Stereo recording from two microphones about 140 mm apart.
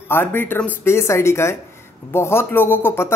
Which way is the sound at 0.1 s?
15° left (ahead or behind).